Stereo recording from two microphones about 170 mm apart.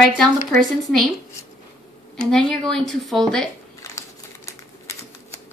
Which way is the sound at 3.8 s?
15° left (ahead or behind).